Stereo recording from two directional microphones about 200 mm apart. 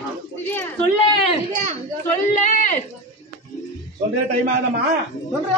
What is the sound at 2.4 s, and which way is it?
Speech, 35° left (ahead or behind).